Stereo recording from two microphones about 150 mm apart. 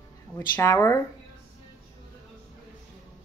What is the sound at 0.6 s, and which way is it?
Speech, 20° left (ahead or behind).